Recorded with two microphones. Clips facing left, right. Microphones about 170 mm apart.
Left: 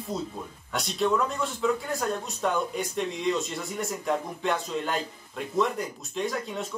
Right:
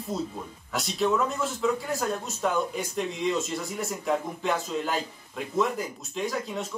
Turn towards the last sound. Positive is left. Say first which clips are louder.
# even
turn(degrees=0)  # may be behind; listen again after turning